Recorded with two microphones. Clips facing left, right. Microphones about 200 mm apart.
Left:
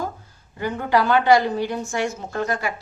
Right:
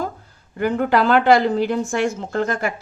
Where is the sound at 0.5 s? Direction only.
60° right (ahead or behind).